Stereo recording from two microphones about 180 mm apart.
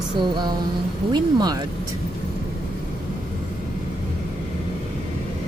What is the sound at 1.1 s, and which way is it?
Speech, 20° right (ahead or behind).